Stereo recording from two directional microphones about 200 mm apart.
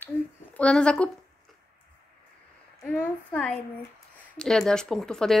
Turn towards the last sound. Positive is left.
turn(degrees=5)  # may be behind; listen again after turning